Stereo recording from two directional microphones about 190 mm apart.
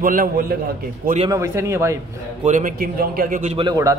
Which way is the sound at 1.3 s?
15° right (ahead or behind).